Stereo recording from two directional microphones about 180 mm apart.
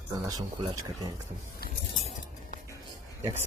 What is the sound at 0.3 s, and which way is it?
Speech, 20° right (ahead or behind).